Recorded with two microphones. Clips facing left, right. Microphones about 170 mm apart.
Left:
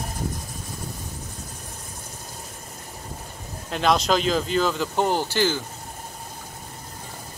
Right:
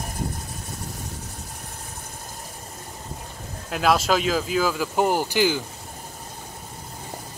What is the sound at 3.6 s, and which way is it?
Speech, 5° right (ahead or behind).